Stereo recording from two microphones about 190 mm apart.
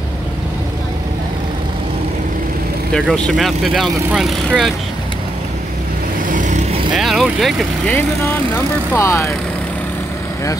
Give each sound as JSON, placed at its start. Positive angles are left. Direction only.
{"t": 2.9, "sound": "speech", "side_deg": 5}
{"t": 6.3, "sound": "vehicle", "side_deg": -40}
{"t": 7.0, "sound": "speech", "side_deg": 0}
{"t": 7.9, "sound": "speech", "side_deg": 15}